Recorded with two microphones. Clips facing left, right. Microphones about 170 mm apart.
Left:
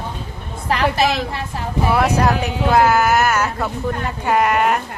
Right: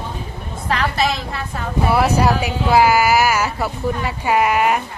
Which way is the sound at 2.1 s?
10° right (ahead or behind).